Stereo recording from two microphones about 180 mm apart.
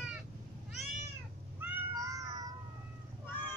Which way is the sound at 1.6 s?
20° right (ahead or behind).